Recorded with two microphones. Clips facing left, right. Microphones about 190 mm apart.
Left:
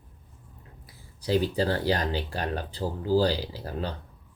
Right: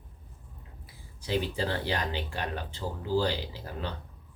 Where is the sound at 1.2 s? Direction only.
35° left (ahead or behind).